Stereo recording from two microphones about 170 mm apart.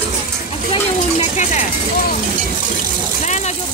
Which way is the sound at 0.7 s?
40° left (ahead or behind).